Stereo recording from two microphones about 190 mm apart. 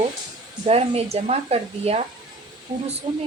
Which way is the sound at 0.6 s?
30° right (ahead or behind).